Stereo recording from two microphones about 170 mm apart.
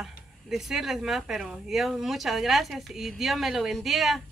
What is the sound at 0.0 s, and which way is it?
Speech, 5° right (ahead or behind).